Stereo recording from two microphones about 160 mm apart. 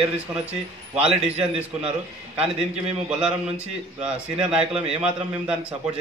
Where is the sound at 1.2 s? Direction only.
10° right (ahead or behind).